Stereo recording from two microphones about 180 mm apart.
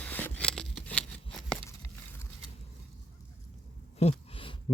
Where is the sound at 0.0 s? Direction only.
10° left (ahead or behind).